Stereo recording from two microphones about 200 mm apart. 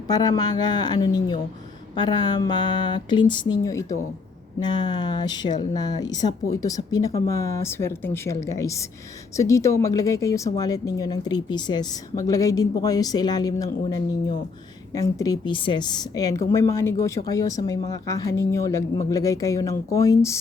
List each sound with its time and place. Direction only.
0.1 s a woman's voice: 20° left (ahead or behind)